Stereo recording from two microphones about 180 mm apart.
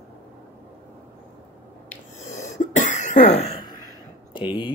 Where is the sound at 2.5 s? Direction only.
40° left (ahead or behind).